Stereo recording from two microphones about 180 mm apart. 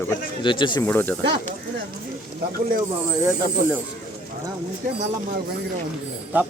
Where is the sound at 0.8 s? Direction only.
10° left (ahead or behind).